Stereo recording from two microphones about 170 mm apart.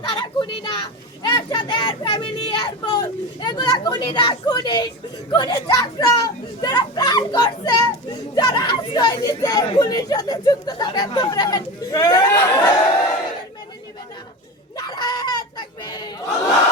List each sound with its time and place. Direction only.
0.0 s speech: 30° left (ahead or behind)
14.8 s chicken: 25° left (ahead or behind)